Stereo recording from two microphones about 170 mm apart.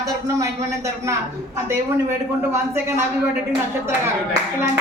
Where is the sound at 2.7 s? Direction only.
15° right (ahead or behind).